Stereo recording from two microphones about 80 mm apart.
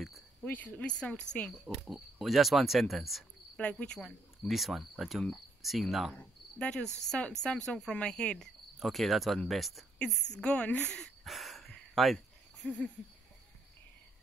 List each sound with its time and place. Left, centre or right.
0.5 s cricket: left
1.5 s speech: centre
3.5 s cricket: centre
4.4 s speech: centre
5.2 s cricket: centre
6.1 s cricket: centre
8.7 s speech: centre
9.9 s cricket: centre
11.2 s cricket: centre
12.6 s cricket: centre